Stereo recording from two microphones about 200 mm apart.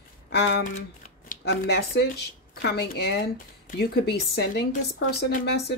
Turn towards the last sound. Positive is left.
turn(degrees=55)  # may be behind; listen again after turning